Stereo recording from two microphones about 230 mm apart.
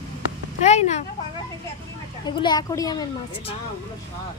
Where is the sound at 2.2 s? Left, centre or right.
Centre.